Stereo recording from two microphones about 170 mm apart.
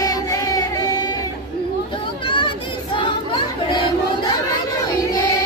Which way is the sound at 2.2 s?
30° left (ahead or behind).